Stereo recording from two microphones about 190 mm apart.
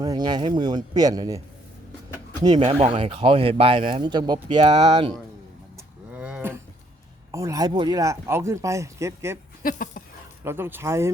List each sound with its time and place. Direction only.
0.0 s speech: 20° right (ahead or behind)
2.4 s speech: 20° right (ahead or behind)
2.8 s speech: 30° right (ahead or behind)
5.7 s cattle: 5° right (ahead or behind)
7.3 s speech: 15° right (ahead or behind)
9.6 s a sound: 45° left (ahead or behind)
10.4 s speech: 10° right (ahead or behind)